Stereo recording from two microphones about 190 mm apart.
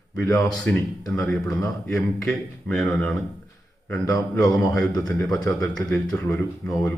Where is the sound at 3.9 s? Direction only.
15° left (ahead or behind).